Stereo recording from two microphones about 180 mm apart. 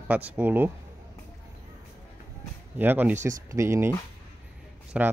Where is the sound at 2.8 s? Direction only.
10° right (ahead or behind).